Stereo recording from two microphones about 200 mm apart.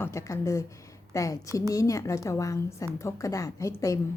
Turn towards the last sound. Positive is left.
turn(degrees=15)  # may be behind; listen again after turning